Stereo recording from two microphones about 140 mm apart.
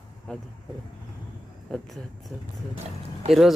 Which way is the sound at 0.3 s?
5° left (ahead or behind).